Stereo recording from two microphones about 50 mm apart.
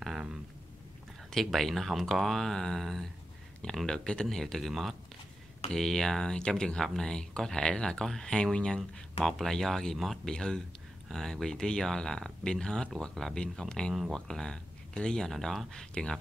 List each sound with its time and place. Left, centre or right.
1.3 s speech: centre
9.2 s speech: centre
10.3 s speech: centre